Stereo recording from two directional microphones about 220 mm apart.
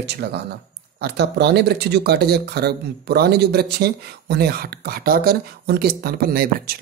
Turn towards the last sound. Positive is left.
turn(degrees=-45)  # may be behind; listen again after turning